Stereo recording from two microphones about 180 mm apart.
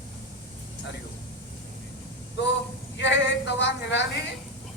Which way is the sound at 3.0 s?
75° left (ahead or behind).